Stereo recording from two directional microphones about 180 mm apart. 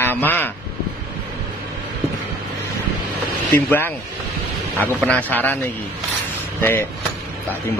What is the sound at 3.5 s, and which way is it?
Speech, 10° left (ahead or behind).